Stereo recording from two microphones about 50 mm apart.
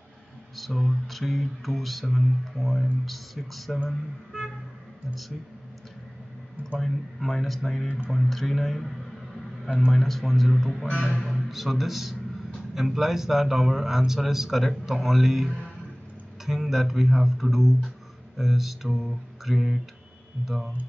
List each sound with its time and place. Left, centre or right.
0.6 s speech: centre
6.8 s speech: centre
9.9 s speech: centre
10.9 s speech: right
11.1 s a man's voice: centre